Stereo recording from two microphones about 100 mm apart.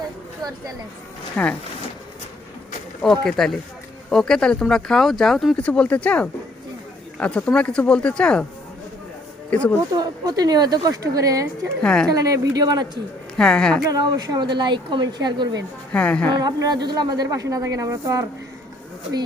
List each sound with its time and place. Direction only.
1.4 s speech: 10° left (ahead or behind)
3.0 s speech: 5° left (ahead or behind)
5.5 s speech: 10° left (ahead or behind)
9.5 s speech: 15° left (ahead or behind)
9.9 s a man's voice: 40° right (ahead or behind)
11.8 s speech: 10° left (ahead or behind)
12.0 s a man's voice: 35° right (ahead or behind)
13.3 s speech: 10° left (ahead or behind)
13.8 s speech: 40° right (ahead or behind)
15.9 s speech: 15° left (ahead or behind)
16.4 s a man's voice: 45° right (ahead or behind)